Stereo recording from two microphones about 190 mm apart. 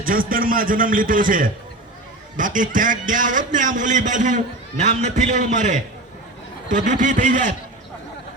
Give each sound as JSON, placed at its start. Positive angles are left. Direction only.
{"t": 0.0, "sound": "a man's voice", "side_deg": -45}